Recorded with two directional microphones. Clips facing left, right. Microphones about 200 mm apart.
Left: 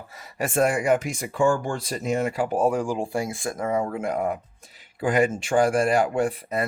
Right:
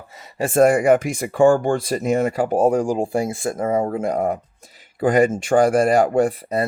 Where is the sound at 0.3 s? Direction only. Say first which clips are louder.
Right 5 dB; 30° right (ahead or behind).